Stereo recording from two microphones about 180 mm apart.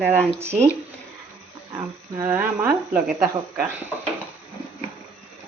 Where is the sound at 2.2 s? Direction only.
10° right (ahead or behind).